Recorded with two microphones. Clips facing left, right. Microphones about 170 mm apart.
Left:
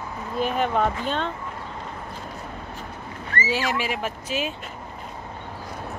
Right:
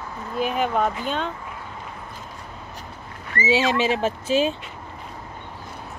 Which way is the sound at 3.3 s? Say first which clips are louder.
Right 5 dB; 20° right (ahead or behind).